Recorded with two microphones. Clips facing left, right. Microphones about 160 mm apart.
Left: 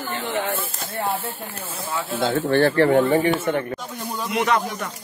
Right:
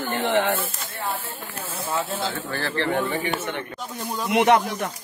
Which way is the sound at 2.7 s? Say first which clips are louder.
Left 8 dB; 45° left (ahead or behind).